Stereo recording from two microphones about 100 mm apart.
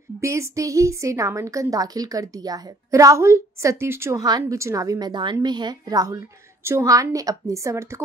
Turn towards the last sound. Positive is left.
turn(degrees=-30)  # may be behind; listen again after turning